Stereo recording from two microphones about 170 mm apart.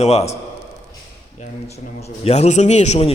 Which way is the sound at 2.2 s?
40° left (ahead or behind).